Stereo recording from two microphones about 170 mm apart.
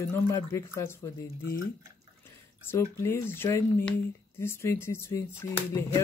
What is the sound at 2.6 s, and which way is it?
Speech, 15° left (ahead or behind).